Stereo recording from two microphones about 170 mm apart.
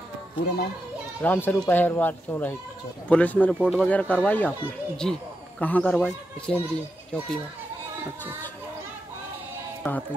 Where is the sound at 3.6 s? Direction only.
5° right (ahead or behind).